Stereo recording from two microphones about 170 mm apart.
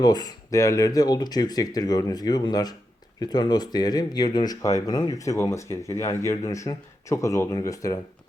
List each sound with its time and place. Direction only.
0.0 s speech: 25° left (ahead or behind)